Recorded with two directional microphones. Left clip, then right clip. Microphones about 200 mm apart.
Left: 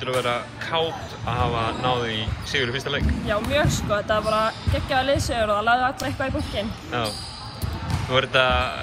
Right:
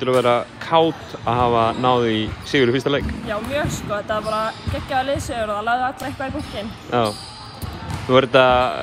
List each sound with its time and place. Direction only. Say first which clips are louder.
0.0 s speech: right 7 dB; 25° right (ahead or behind)
3.9 s speech: even; 10° right (ahead or behind)
6.9 s speech: right 7 dB; 25° right (ahead or behind)
8.1 s speech: right 6 dB; 25° right (ahead or behind)